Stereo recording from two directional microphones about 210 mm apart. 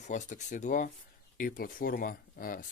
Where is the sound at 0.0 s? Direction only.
35° left (ahead or behind).